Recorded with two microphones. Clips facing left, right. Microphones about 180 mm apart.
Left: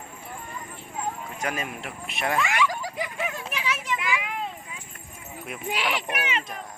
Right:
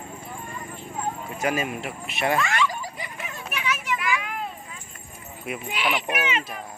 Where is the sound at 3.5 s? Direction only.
30° left (ahead or behind).